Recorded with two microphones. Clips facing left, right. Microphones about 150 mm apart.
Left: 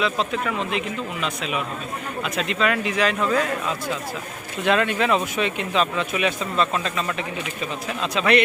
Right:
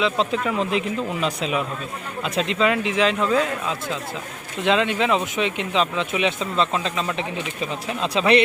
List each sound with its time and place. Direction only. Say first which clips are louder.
0.0 s speech: right 2 dB; 25° right (ahead or behind)
4.6 s speech: even; 20° right (ahead or behind)